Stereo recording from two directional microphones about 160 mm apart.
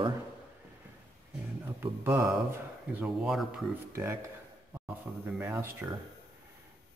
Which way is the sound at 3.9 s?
15° right (ahead or behind).